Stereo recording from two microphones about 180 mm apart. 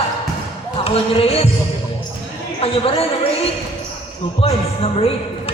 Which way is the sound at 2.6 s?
30° left (ahead or behind).